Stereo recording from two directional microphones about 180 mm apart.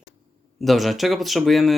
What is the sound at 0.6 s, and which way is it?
Speech, centre (ahead or behind).